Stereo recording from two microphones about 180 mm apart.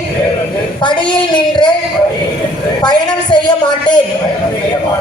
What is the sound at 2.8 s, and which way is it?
Speech, 25° left (ahead or behind).